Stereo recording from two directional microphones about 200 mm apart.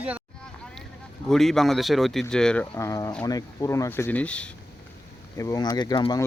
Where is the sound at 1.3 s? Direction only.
Centre (ahead or behind).